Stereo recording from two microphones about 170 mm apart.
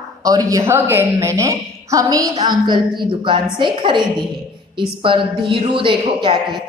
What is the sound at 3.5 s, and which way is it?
A woman's voice, 30° right (ahead or behind).